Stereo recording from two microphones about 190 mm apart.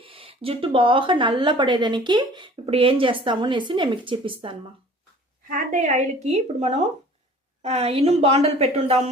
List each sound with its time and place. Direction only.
0.0 s speech: 30° right (ahead or behind)
5.5 s a woman's voice: 45° right (ahead or behind)